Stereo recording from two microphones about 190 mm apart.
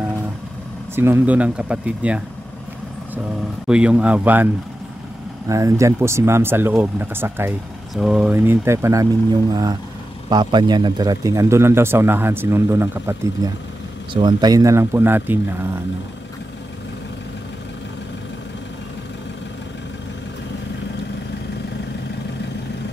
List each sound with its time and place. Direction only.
0.9 s a man's voice: 10° right (ahead or behind)
3.6 s a man's voice: 5° right (ahead or behind)
5.5 s a man's voice: 15° right (ahead or behind)